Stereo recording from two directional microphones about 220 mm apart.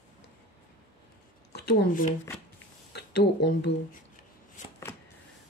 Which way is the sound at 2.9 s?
50° left (ahead or behind).